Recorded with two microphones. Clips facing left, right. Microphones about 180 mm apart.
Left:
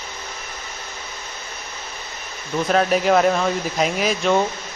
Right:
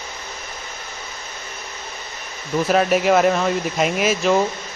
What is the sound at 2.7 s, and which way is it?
Speech, 5° right (ahead or behind).